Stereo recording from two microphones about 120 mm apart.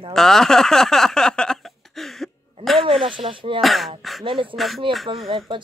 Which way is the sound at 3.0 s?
45° right (ahead or behind).